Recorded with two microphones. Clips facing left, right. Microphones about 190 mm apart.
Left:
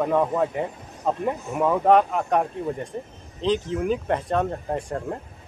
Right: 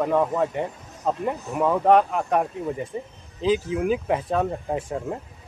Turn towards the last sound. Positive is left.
turn(degrees=-5)  # may be behind; listen again after turning